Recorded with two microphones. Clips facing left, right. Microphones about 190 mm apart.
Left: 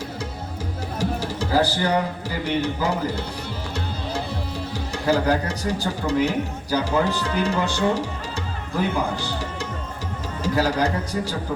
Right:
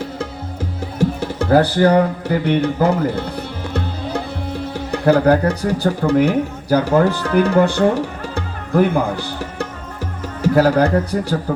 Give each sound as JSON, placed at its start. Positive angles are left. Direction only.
{"t": 0.9, "sound": "speech", "side_deg": -60}
{"t": 4.7, "sound": "speech", "side_deg": -60}